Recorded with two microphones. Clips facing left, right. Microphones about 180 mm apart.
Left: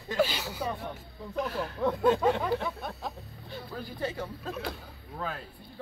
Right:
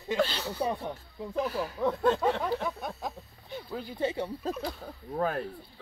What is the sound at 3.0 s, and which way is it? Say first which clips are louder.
Speech: right 1 dB; 20° right (ahead or behind).